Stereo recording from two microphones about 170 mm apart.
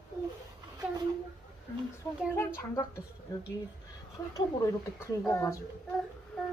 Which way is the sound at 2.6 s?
20° left (ahead or behind).